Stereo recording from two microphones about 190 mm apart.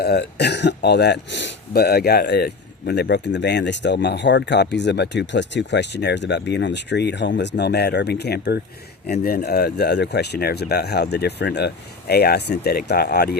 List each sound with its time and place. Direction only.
0.0 s speech: 60° left (ahead or behind)